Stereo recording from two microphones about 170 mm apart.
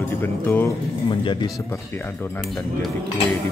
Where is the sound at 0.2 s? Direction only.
10° left (ahead or behind).